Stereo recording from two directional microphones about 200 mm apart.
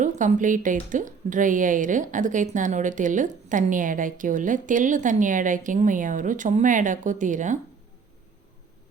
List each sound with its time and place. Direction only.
0.0 s a woman's voice: 40° right (ahead or behind)